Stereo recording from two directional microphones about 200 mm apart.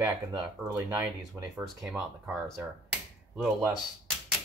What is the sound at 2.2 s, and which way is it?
Speech, centre (ahead or behind).